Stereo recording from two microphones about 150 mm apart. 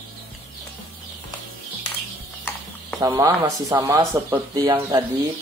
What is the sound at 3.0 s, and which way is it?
Speech, 25° right (ahead or behind).